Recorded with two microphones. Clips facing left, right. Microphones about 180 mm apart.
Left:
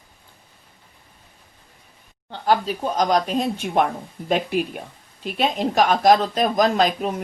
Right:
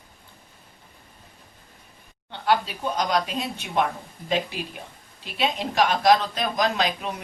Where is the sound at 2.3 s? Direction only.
40° left (ahead or behind).